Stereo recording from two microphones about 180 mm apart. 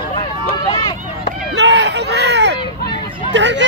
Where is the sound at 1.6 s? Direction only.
75° right (ahead or behind).